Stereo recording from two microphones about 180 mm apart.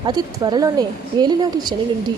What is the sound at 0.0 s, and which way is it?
A woman's voice, 25° right (ahead or behind).